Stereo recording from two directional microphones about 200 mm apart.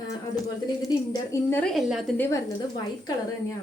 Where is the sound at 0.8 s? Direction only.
15° left (ahead or behind).